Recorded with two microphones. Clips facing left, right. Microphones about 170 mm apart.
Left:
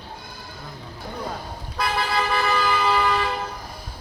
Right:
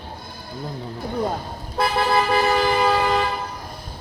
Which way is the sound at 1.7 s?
50° right (ahead or behind).